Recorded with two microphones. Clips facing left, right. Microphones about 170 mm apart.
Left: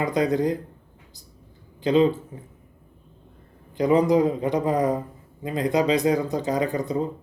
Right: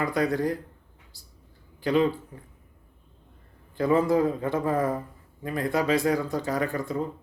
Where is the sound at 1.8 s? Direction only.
20° left (ahead or behind).